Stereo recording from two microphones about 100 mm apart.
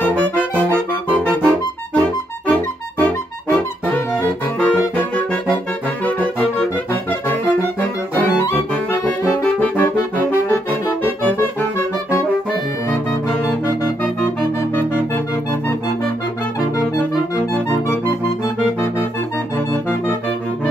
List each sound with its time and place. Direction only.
0.0 s music: 15° left (ahead or behind)
4.1 s saxophone: 15° left (ahead or behind)
6.0 s music: 15° left (ahead or behind)
9.4 s music: 15° left (ahead or behind)
17.5 s music: 25° left (ahead or behind)